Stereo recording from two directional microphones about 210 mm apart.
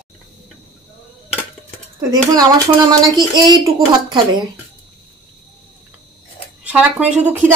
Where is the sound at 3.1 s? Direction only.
20° right (ahead or behind).